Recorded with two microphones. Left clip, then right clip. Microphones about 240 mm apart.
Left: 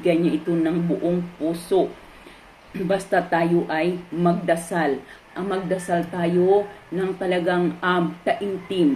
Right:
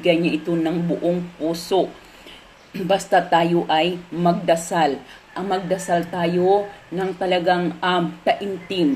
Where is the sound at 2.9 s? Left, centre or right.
Right.